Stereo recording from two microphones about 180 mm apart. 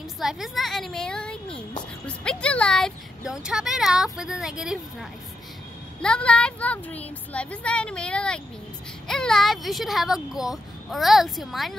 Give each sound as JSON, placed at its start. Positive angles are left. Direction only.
{"t": 0.2, "sound": "a woman's voice", "side_deg": 0}
{"t": 6.0, "sound": "speech", "side_deg": 5}